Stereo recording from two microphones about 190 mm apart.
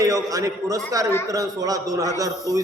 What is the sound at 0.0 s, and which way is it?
A man's voice, 20° right (ahead or behind).